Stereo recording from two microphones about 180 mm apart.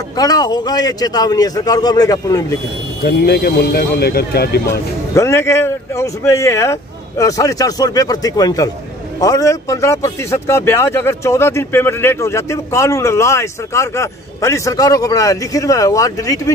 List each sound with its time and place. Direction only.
0.2 s speech: 20° left (ahead or behind)
3.0 s speech: 60° left (ahead or behind)
5.1 s speech: 15° left (ahead or behind)